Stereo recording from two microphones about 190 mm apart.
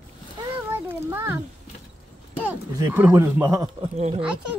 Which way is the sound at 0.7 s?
10° right (ahead or behind).